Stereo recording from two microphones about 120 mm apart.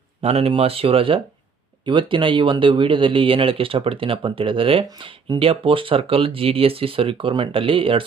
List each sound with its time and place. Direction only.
0.2 s speech: 60° right (ahead or behind)